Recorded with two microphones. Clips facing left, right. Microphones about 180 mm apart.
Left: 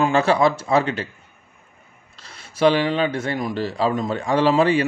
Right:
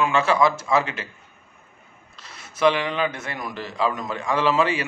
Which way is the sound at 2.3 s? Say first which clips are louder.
Left 3 dB; 30° left (ahead or behind).